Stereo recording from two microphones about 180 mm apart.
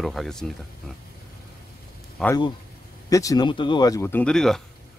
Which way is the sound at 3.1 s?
20° left (ahead or behind).